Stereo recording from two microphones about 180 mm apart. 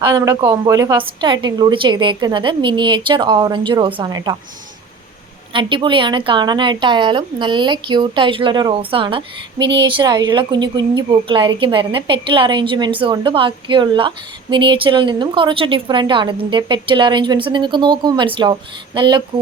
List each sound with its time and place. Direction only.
0.0 s a woman's voice: 20° right (ahead or behind)
5.5 s a woman's voice: 30° right (ahead or behind)